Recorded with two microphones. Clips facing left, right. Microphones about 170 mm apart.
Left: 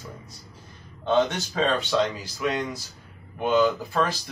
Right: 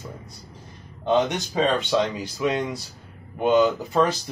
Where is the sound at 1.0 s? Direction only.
15° right (ahead or behind).